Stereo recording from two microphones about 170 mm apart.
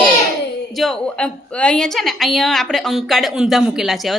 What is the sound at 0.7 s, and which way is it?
A woman's voice, centre (ahead or behind).